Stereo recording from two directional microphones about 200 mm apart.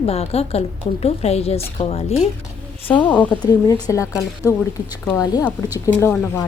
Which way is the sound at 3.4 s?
20° left (ahead or behind).